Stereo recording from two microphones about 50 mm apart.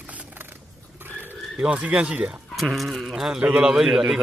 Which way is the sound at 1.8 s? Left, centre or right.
Right.